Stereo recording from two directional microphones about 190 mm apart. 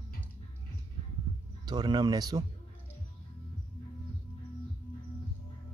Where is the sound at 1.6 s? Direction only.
20° right (ahead or behind).